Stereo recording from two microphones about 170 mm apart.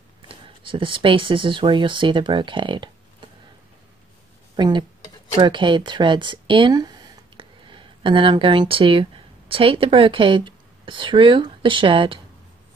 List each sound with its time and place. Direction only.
0.3 s speech: 30° right (ahead or behind)
4.6 s speech: 25° right (ahead or behind)